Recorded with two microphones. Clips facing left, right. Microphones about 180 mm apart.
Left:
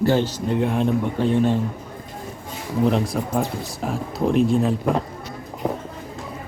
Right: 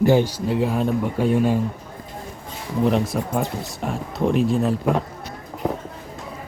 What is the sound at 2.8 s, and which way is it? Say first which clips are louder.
Speech: even; centre (ahead or behind).